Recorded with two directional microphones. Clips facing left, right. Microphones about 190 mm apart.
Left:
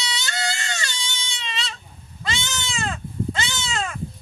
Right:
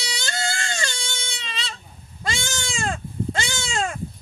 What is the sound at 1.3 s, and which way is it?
Goat, 40° right (ahead or behind).